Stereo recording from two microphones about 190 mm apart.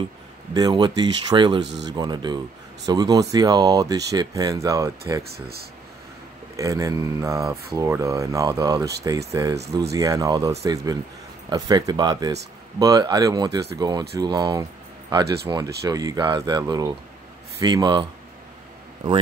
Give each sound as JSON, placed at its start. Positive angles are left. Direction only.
{"t": 0.6, "sound": "speech", "side_deg": -20}
{"t": 1.6, "sound": "speech", "side_deg": -70}
{"t": 1.9, "sound": "speech", "side_deg": -20}
{"t": 5.3, "sound": "speech", "side_deg": -55}
{"t": 6.5, "sound": "speech", "side_deg": -15}